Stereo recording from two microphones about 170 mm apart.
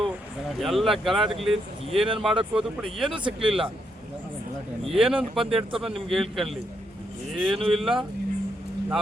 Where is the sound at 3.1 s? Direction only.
30° right (ahead or behind).